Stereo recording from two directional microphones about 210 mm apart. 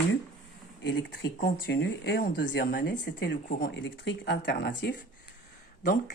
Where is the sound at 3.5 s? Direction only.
45° left (ahead or behind).